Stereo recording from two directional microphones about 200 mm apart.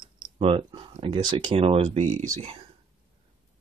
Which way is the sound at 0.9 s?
25° right (ahead or behind).